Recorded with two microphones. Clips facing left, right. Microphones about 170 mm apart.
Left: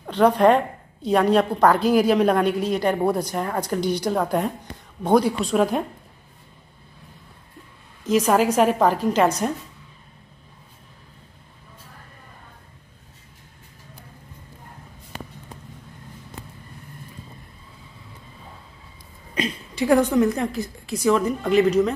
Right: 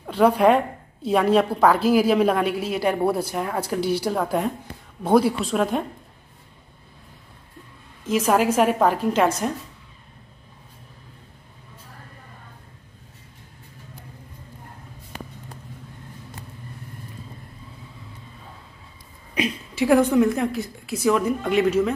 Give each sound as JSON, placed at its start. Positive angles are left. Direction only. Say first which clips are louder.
{"t": 0.0, "sound": "a woman's voice", "louder": "left 1 dB", "side_deg": -5}
{"t": 8.1, "sound": "a woman's voice", "louder": "left 1 dB", "side_deg": 0}
{"t": 19.7, "sound": "a woman's voice", "louder": "right 1 dB", "side_deg": -5}